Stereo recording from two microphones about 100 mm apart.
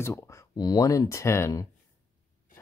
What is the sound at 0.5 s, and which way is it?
Speech, 45° left (ahead or behind).